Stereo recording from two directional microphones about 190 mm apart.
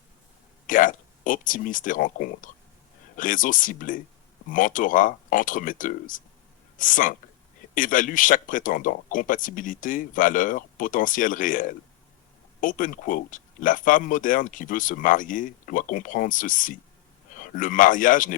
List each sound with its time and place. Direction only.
0.7 s speech: 45° left (ahead or behind)